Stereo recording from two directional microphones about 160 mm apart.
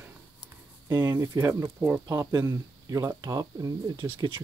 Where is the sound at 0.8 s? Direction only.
25° right (ahead or behind).